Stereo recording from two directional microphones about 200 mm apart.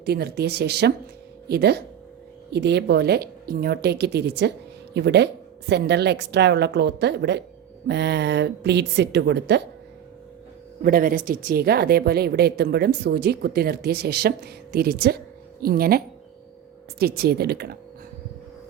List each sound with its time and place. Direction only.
0.0 s speech: 55° right (ahead or behind)
10.8 s speech: 45° right (ahead or behind)